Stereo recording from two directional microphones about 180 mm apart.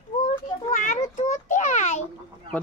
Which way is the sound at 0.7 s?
45° left (ahead or behind).